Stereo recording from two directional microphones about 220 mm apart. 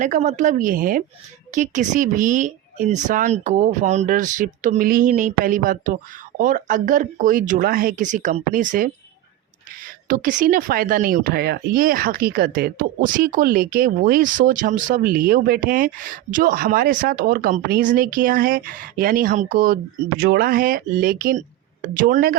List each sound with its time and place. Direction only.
0.0 s speech: 35° right (ahead or behind)
10.1 s speech: 40° right (ahead or behind)